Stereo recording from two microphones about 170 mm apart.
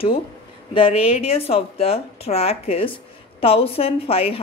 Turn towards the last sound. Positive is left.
turn(degrees=35)  # may be behind; listen again after turning